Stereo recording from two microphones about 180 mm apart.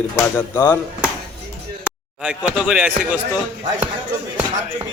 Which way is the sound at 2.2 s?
5° right (ahead or behind).